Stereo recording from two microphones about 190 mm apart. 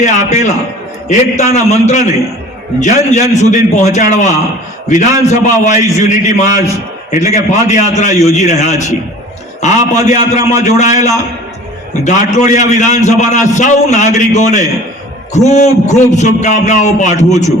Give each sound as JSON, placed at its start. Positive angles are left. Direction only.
{"t": 0.0, "sound": "a man's voice", "side_deg": 40}
{"t": 9.9, "sound": "a man's voice", "side_deg": 40}